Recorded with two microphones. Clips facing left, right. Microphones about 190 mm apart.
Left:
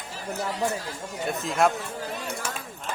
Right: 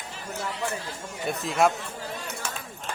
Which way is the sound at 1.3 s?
Centre (ahead or behind).